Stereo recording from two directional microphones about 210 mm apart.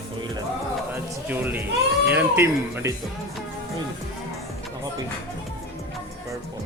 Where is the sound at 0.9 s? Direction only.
10° right (ahead or behind).